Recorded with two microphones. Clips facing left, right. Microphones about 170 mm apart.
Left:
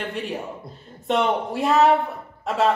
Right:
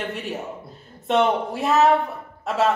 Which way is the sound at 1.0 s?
Centre (ahead or behind).